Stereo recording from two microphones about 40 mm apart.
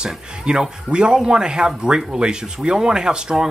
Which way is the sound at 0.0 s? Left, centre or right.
Centre.